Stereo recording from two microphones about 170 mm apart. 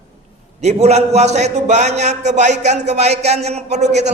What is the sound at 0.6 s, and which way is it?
A man's voice, 40° right (ahead or behind).